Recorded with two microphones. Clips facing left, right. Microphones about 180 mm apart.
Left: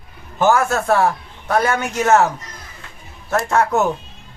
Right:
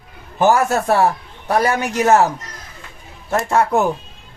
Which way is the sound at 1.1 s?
35° right (ahead or behind).